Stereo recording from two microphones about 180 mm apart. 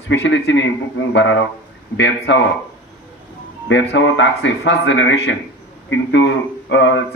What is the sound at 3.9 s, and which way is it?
Speech, 90° left.